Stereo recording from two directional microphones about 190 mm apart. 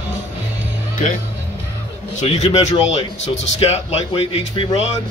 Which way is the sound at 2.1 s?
35° left (ahead or behind).